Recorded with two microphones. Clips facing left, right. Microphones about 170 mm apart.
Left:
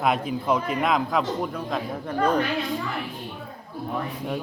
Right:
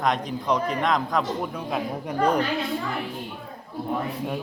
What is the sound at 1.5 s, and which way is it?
Speech, 10° right (ahead or behind).